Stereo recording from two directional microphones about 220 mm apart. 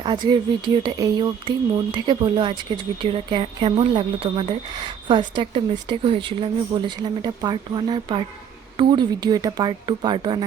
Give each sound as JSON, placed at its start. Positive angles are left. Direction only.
{"t": 0.0, "sound": "speech", "side_deg": -20}